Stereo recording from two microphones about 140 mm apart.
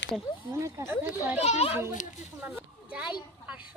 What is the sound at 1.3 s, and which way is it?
Speech, 50° left (ahead or behind).